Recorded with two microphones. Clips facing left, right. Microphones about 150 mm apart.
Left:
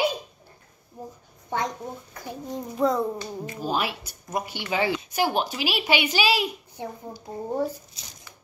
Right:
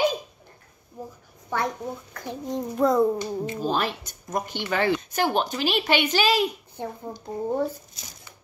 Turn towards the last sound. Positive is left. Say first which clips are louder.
# right 2 dB
turn(degrees=10)  # may be behind; listen again after turning